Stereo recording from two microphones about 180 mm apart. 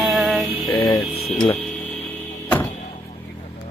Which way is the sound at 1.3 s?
5° left (ahead or behind).